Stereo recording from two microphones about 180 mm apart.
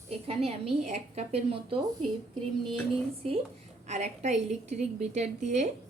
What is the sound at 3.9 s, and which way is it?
A woman's voice, 40° right (ahead or behind).